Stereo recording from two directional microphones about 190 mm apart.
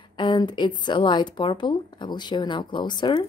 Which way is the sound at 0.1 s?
25° left (ahead or behind).